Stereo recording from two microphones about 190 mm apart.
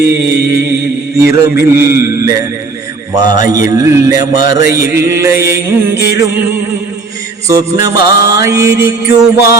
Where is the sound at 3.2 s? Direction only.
20° right (ahead or behind).